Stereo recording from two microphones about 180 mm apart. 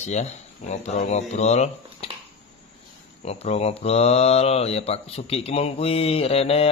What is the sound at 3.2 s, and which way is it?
A man's voice, 35° left (ahead or behind).